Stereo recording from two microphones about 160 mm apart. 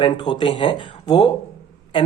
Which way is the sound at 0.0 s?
30° left (ahead or behind).